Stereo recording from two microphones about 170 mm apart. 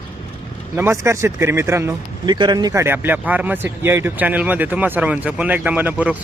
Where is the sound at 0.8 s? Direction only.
15° right (ahead or behind).